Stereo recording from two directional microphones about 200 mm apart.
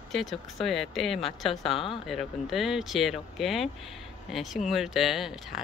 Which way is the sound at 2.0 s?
Centre (ahead or behind).